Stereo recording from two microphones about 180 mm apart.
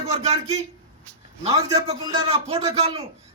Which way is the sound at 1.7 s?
30° right (ahead or behind).